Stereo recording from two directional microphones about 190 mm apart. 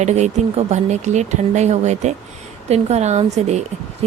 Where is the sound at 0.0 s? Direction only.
35° right (ahead or behind).